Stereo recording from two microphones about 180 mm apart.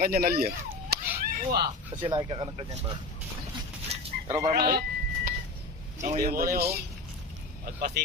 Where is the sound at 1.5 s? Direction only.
25° right (ahead or behind).